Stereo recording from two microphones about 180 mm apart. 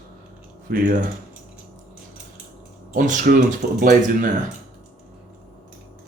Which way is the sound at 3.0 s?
45° right (ahead or behind).